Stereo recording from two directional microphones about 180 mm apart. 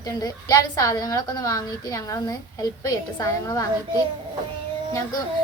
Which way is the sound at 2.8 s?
20° left (ahead or behind).